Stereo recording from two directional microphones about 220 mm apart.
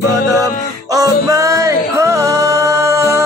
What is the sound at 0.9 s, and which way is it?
Music, 15° right (ahead or behind).